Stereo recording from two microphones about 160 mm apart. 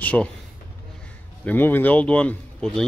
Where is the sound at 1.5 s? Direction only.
10° left (ahead or behind).